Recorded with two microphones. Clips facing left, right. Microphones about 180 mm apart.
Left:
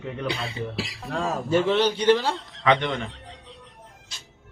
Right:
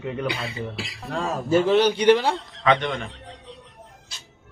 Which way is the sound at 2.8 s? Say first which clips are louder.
Even; 20° left (ahead or behind).